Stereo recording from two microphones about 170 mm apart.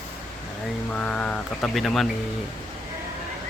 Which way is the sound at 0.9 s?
5° left (ahead or behind).